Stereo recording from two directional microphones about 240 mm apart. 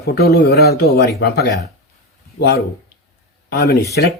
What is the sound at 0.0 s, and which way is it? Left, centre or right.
Speech, left.